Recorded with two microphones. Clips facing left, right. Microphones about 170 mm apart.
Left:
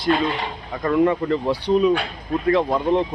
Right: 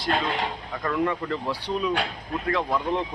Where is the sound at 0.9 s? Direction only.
25° left (ahead or behind).